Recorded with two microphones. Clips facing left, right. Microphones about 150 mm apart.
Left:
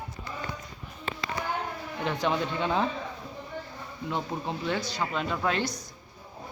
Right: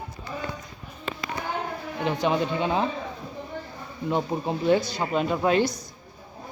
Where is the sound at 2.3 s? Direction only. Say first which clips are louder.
Right 3 dB; 10° right (ahead or behind).